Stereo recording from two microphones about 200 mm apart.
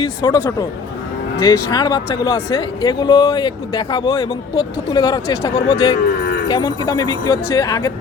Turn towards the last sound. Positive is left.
turn(degrees=20)  # may be behind; listen again after turning